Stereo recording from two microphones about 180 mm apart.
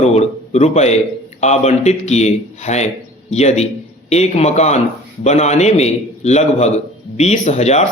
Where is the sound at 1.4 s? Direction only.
40° left (ahead or behind).